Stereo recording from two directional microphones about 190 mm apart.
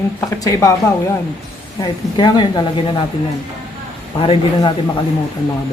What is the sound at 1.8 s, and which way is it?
Speech, 20° left (ahead or behind).